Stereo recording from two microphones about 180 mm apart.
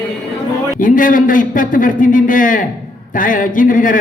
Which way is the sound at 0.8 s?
45° left (ahead or behind).